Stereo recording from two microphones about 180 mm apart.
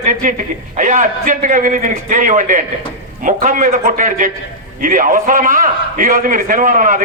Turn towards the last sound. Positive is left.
turn(degrees=-45)  # may be behind; listen again after turning